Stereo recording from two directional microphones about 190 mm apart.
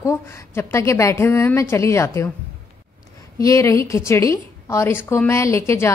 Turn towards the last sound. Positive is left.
turn(degrees=15)  # may be behind; listen again after turning